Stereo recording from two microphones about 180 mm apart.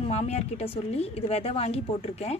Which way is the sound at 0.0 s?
35° left (ahead or behind).